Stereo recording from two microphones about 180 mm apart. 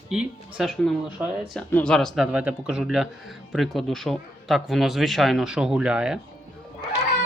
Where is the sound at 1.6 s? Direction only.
5° left (ahead or behind).